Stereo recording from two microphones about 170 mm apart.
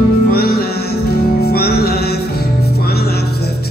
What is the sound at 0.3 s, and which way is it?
Music, 65° left (ahead or behind).